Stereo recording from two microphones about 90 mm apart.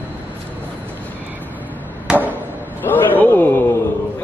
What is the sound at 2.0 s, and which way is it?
Chop, 20° right (ahead or behind).